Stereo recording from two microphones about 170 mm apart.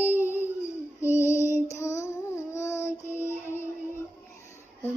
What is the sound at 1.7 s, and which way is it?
Child singing, 15° left (ahead or behind).